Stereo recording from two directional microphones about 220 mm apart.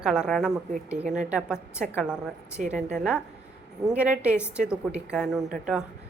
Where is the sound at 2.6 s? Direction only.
35° right (ahead or behind).